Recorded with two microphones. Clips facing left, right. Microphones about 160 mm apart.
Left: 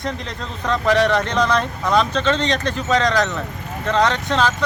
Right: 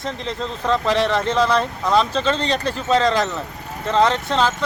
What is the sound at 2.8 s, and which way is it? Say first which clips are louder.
Speech: right 1 dB; 30° right (ahead or behind).